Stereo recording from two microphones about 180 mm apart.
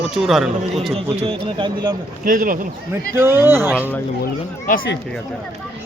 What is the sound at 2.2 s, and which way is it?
Speech, 50° right (ahead or behind).